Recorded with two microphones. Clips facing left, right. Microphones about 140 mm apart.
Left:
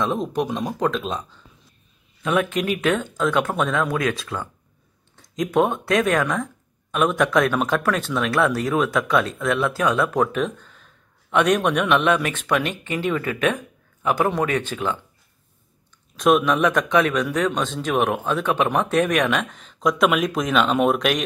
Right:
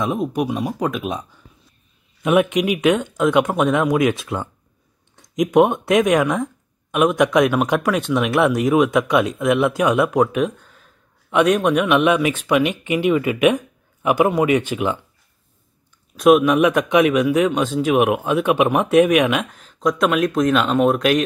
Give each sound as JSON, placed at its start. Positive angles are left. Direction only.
{"t": 0.0, "sound": "speech", "side_deg": -10}
{"t": 16.2, "sound": "speech", "side_deg": -5}